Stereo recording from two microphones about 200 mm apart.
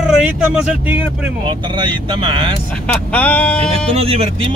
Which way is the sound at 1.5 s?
20° right (ahead or behind).